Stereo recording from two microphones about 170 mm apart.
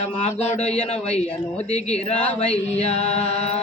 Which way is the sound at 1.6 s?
40° left (ahead or behind).